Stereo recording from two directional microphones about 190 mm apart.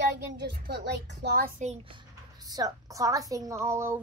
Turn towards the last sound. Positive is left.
turn(degrees=-15)  # may be behind; listen again after turning